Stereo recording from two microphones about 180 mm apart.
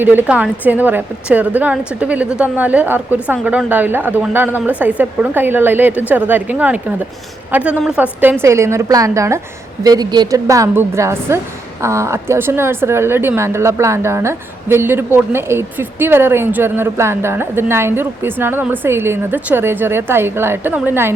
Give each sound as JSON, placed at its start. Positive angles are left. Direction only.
{"t": 0.0, "sound": "a woman's voice", "side_deg": -10}